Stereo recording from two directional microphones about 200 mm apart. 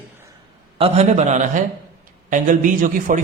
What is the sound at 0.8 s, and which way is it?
Speech, 30° right (ahead or behind).